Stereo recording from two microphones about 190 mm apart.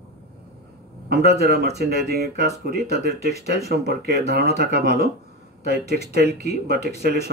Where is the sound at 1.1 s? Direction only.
60° right (ahead or behind).